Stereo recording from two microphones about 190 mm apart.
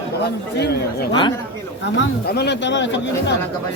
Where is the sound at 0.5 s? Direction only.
65° left (ahead or behind).